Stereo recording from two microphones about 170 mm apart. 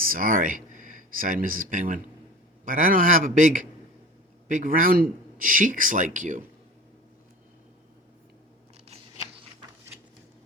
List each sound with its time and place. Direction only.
0.0 s speech: 55° right (ahead or behind)